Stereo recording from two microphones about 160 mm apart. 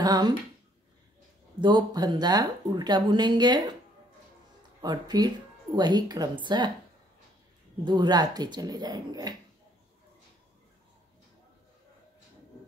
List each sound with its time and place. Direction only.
0.0 s a woman's voice: 25° right (ahead or behind)
1.6 s a woman's voice: 30° right (ahead or behind)
4.8 s a woman's voice: 25° right (ahead or behind)
7.8 s a woman's voice: 30° right (ahead or behind)